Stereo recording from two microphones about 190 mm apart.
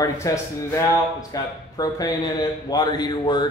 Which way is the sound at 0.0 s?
15° left (ahead or behind).